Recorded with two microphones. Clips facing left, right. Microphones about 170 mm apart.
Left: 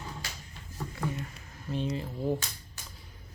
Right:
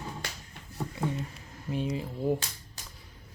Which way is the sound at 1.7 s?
10° right (ahead or behind).